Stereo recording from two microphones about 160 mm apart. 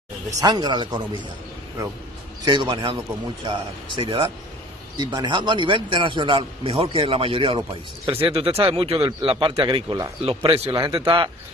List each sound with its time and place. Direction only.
0.4 s speech: 25° right (ahead or behind)